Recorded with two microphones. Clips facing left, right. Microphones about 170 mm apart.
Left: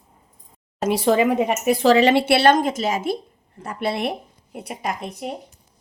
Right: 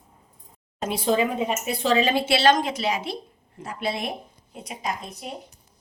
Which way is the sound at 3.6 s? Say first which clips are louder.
Left 5 dB; 60° left (ahead or behind).